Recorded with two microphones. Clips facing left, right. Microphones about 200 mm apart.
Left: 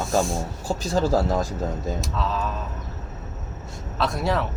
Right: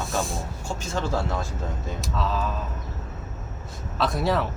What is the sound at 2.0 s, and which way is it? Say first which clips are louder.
Speech: even; centre (ahead or behind).